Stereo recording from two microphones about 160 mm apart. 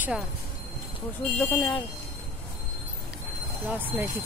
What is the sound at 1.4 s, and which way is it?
Speech, 15° left (ahead or behind).